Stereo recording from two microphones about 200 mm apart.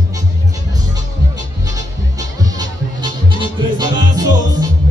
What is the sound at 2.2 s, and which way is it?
Music, 20° right (ahead or behind).